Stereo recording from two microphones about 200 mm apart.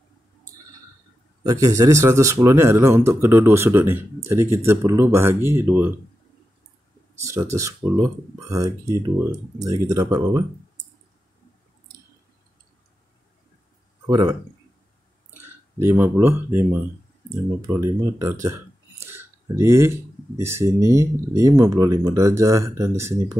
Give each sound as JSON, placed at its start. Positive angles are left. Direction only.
{"t": 1.4, "sound": "speech", "side_deg": -15}
{"t": 7.2, "sound": "speech", "side_deg": -15}
{"t": 14.0, "sound": "speech", "side_deg": -20}
{"t": 15.4, "sound": "speech", "side_deg": -10}